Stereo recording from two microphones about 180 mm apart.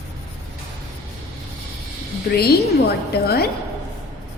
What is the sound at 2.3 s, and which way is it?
A woman's voice, 60° left (ahead or behind).